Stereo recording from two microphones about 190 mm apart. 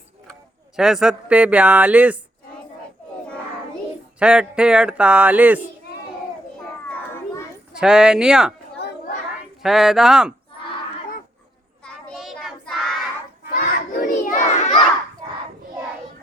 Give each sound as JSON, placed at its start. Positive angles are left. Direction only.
{"t": 0.8, "sound": "speech", "side_deg": -5}
{"t": 4.2, "sound": "speech", "side_deg": -5}
{"t": 6.9, "sound": "children playing", "side_deg": 10}
{"t": 7.7, "sound": "speech", "side_deg": -5}
{"t": 8.8, "sound": "a sound", "side_deg": 60}
{"t": 9.6, "sound": "speech", "side_deg": 0}
{"t": 11.8, "sound": "child singing", "side_deg": 5}
{"t": 13.5, "sound": "crowd", "side_deg": 45}